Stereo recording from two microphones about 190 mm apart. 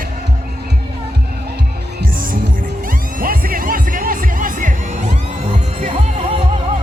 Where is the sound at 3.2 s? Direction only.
50° right (ahead or behind).